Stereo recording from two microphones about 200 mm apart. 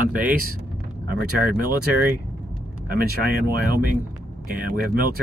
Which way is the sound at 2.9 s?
50° right (ahead or behind).